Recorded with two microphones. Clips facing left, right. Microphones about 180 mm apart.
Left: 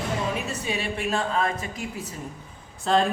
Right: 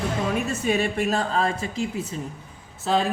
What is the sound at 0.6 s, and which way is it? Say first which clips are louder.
A woman's voice: right 7 dB; 45° right (ahead or behind).